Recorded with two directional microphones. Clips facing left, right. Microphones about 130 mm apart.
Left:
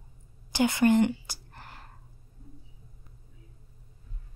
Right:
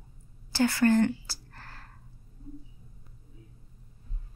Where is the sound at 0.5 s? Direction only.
20° left (ahead or behind).